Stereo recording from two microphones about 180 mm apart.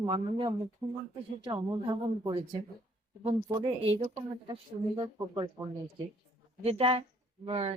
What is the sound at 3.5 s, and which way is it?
A woman's voice, 30° right (ahead or behind).